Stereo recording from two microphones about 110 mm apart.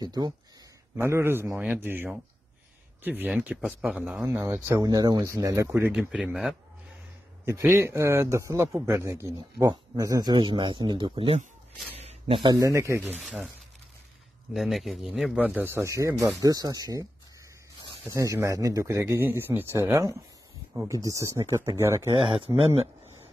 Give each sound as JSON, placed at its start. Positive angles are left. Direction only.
{"t": 0.0, "sound": "speech", "side_deg": -40}
{"t": 0.9, "sound": "speech", "side_deg": -20}
{"t": 1.5, "sound": "speech", "side_deg": -10}
{"t": 3.3, "sound": "speech", "side_deg": -5}
{"t": 4.8, "sound": "speech", "side_deg": -35}
{"t": 5.9, "sound": "a man's voice", "side_deg": -10}
{"t": 7.4, "sound": "speech", "side_deg": -25}
{"t": 10.3, "sound": "speech", "side_deg": -45}
{"t": 12.0, "sound": "a sound", "side_deg": -70}
{"t": 12.5, "sound": "speech", "side_deg": -30}
{"t": 13.2, "sound": "speech", "side_deg": -10}
{"t": 14.5, "sound": "a man's voice", "side_deg": 0}
{"t": 15.3, "sound": "speech", "side_deg": -15}
{"t": 22.1, "sound": "speech", "side_deg": -50}